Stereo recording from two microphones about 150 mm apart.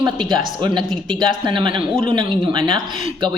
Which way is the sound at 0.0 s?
30° right (ahead or behind).